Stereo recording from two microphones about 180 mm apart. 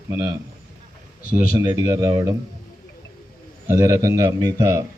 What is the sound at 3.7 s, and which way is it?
A man's voice, 20° right (ahead or behind).